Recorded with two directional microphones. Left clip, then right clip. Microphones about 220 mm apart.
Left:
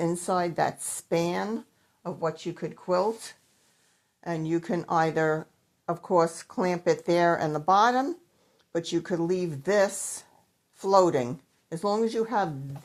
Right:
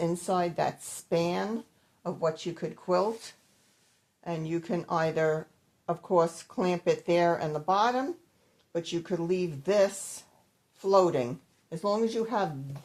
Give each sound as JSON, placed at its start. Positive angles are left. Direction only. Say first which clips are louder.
{"t": 0.0, "sound": "speech", "louder": "left 2 dB", "side_deg": 30}